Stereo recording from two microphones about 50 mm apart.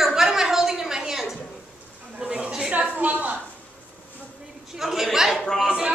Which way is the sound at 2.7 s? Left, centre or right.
Right.